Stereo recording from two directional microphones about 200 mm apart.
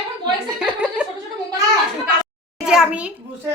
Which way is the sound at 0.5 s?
5° right (ahead or behind).